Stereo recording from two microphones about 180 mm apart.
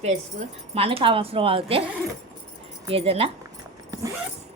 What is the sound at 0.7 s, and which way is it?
Speech, 30° right (ahead or behind).